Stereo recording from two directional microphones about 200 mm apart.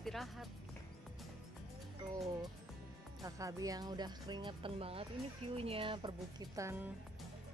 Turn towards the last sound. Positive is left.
turn(degrees=-15)  # may be behind; listen again after turning